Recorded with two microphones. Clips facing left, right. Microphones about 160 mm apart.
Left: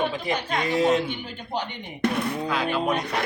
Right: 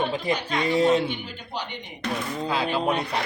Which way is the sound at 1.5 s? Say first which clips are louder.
Left 4 dB; 55° left (ahead or behind).